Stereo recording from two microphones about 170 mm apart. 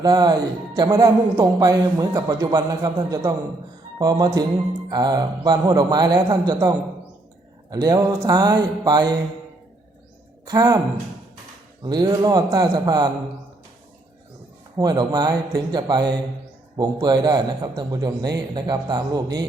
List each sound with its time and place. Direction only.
0.0 s a man's voice: 25° right (ahead or behind)
7.7 s a man's voice: 20° right (ahead or behind)
10.5 s a man's voice: 20° right (ahead or behind)
11.8 s a man's voice: 25° right (ahead or behind)
14.8 s a man's voice: 25° right (ahead or behind)